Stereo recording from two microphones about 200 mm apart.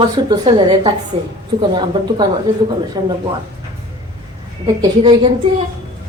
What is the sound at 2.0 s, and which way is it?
A woman's voice, 20° right (ahead or behind).